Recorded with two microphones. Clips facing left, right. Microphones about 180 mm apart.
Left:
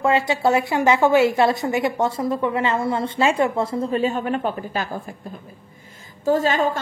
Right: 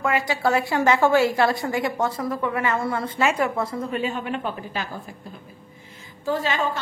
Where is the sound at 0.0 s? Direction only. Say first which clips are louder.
Left 4 dB; 25° left (ahead or behind); by 5.0 s 45° left (ahead or behind).